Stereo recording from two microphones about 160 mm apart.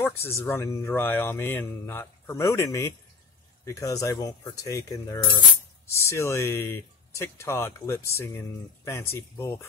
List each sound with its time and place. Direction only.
0.0 s speech: 15° left (ahead or behind)
3.6 s mechanisms: 20° left (ahead or behind)
5.9 s speech: 15° left (ahead or behind)